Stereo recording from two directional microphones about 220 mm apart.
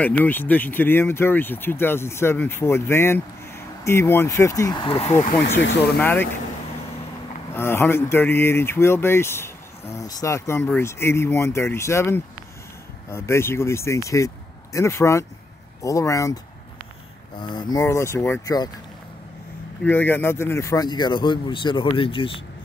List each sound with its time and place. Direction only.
0.0 s speech: 10° left (ahead or behind); by 5.3 s 30° left (ahead or behind)
5.6 s speech: 55° left (ahead or behind)
5.9 s speech: 10° left (ahead or behind)
7.5 s speech: 10° left (ahead or behind)
17.4 s speech: 20° left (ahead or behind)
19.8 s speech: 10° left (ahead or behind); by 22.4 s 25° left (ahead or behind)